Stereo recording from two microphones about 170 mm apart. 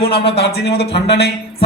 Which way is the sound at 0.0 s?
35° left (ahead or behind).